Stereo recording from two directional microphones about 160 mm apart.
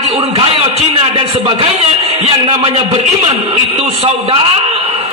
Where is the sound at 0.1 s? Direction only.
40° right (ahead or behind).